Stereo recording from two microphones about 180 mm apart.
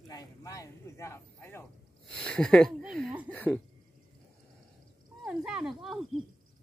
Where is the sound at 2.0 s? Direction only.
Centre (ahead or behind).